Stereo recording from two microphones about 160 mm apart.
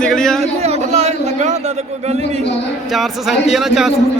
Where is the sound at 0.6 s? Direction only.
40° right (ahead or behind).